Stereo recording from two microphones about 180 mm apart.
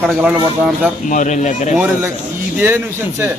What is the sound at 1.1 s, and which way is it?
Speech, 45° left (ahead or behind).